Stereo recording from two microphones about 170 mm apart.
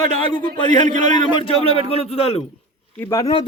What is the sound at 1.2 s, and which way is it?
A man's voice, 30° left (ahead or behind).